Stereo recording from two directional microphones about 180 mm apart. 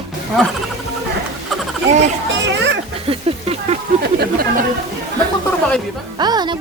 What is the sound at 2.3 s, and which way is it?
Children playing, 85° right.